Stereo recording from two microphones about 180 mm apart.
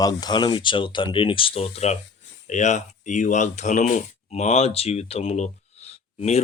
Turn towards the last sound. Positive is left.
turn(degrees=35)  # may be behind; listen again after turning